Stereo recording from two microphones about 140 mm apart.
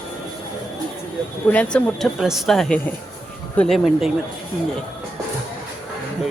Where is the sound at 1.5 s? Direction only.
10° left (ahead or behind).